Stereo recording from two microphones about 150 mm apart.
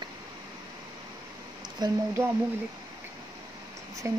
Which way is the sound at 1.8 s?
25° right (ahead or behind).